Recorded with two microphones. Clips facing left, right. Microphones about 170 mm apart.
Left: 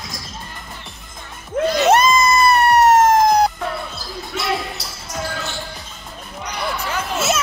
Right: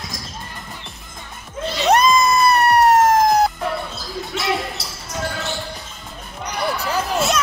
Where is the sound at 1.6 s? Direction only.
70° left (ahead or behind).